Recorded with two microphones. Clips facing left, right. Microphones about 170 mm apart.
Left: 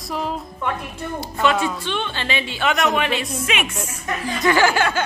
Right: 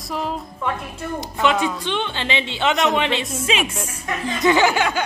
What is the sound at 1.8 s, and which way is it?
A woman's voice, 20° right (ahead or behind).